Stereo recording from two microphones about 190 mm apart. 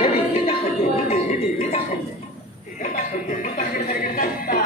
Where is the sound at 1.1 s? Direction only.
35° left (ahead or behind).